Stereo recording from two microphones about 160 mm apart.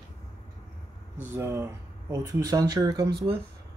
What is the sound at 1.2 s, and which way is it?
Speech, 15° right (ahead or behind).